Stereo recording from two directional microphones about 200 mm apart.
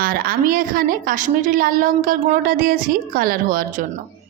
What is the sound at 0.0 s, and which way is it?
A woman's voice, 45° right (ahead or behind).